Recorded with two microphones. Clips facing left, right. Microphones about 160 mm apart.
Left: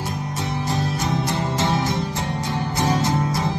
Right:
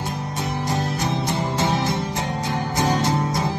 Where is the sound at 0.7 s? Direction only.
20° right (ahead or behind).